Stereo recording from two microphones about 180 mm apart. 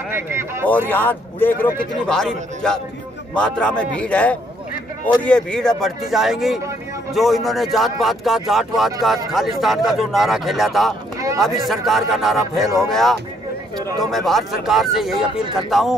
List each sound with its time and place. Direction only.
0.1 s speech: 15° right (ahead or behind)
0.7 s a man's voice: 10° left (ahead or behind)
11.1 s a sound: 20° right (ahead or behind)
11.4 s a man's voice: centre (ahead or behind)